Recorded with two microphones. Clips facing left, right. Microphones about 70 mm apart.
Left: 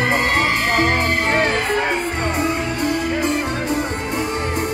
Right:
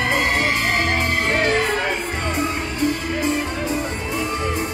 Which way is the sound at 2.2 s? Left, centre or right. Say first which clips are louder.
Left 3 dB; left.